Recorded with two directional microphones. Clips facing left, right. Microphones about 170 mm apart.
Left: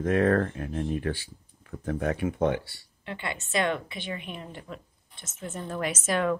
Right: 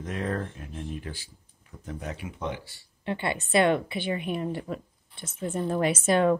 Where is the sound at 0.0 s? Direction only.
60° left (ahead or behind).